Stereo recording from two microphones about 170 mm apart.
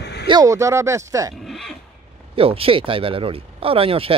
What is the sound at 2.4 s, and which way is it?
Speech, 35° right (ahead or behind).